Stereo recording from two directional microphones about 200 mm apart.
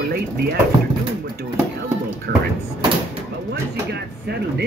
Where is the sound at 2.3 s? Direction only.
50° right (ahead or behind).